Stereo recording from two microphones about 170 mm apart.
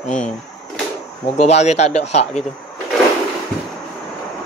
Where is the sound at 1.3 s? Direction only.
40° left (ahead or behind).